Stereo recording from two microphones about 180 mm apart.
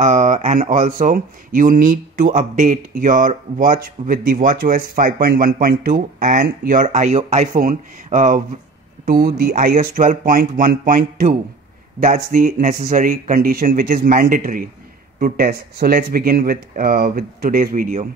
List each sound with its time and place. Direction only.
0.0 s speech: 45° right (ahead or behind)